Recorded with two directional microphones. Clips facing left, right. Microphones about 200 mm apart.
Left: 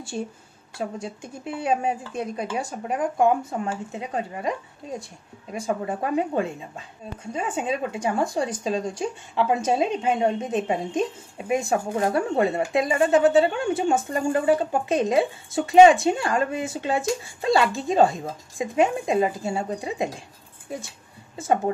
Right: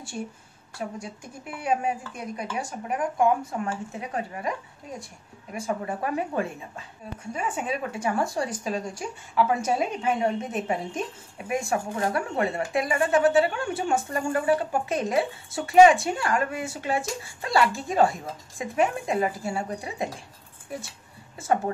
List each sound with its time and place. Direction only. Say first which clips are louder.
0.1 s speech: left 4 dB; 30° left (ahead or behind)
21.4 s speech: left 3 dB; 20° left (ahead or behind)